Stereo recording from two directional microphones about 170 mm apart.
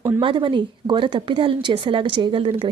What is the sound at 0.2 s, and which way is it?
A woman's voice, 30° right (ahead or behind).